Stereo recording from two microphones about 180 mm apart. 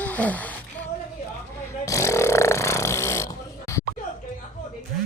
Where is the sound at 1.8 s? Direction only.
15° left (ahead or behind).